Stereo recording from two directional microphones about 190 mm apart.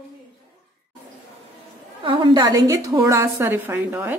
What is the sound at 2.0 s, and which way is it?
A woman's voice, 25° right (ahead or behind).